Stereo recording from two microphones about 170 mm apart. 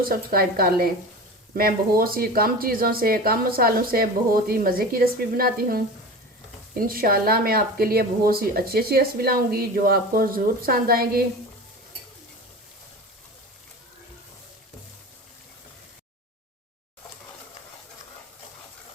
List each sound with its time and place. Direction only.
0.0 s speech: 60° right (ahead or behind)